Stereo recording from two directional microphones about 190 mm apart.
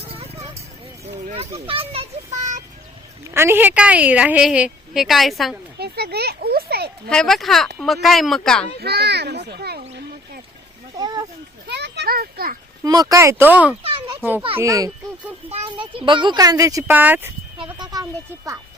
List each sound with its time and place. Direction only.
0.1 s a sound: 30° right (ahead or behind)
1.5 s a child's voice: 30° right (ahead or behind)
3.2 s a woman's voice: 15° right (ahead or behind)
5.8 s a child's voice: 55° right (ahead or behind)
7.1 s speech: centre (ahead or behind)
8.8 s a child's voice: 60° right (ahead or behind)
10.9 s a sound: 20° right (ahead or behind)
11.7 s a sound: 60° right (ahead or behind)
12.8 s a woman's voice: 20° right (ahead or behind)
13.8 s children playing: 30° right (ahead or behind)
14.2 s a child's voice: 10° right (ahead or behind)
15.4 s speech: 30° right (ahead or behind)